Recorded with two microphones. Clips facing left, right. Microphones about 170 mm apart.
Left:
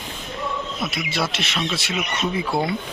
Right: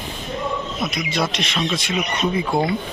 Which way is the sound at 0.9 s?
5° left (ahead or behind).